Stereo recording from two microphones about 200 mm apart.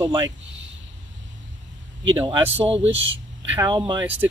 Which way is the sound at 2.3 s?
25° right (ahead or behind).